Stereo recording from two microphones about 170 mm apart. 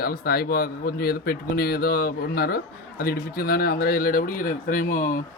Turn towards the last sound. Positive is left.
turn(degrees=50)  # may be behind; listen again after turning